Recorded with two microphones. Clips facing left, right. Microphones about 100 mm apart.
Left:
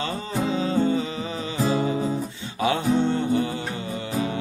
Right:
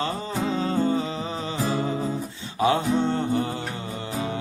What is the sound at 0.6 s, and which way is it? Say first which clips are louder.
Music: left 1 dB; 40° right (ahead or behind).